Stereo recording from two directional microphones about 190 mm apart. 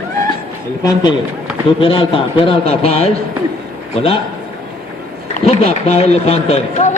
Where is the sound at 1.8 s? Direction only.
30° left (ahead or behind).